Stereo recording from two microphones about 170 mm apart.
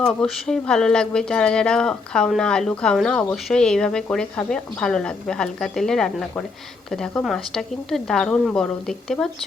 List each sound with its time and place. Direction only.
0.0 s speech: 5° left (ahead or behind)